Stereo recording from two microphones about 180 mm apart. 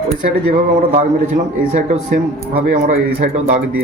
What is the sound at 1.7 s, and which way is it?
A man's voice, 45° right (ahead or behind).